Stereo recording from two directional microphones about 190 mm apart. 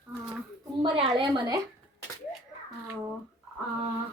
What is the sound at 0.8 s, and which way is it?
Speech, 25° right (ahead or behind).